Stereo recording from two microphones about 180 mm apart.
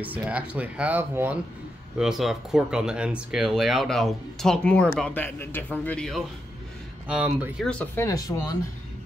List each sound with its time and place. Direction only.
0.0 s speech: 10° right (ahead or behind)
7.8 s speech: 15° left (ahead or behind)